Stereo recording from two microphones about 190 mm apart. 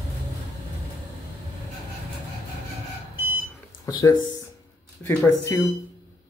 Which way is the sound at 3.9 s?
20° left (ahead or behind).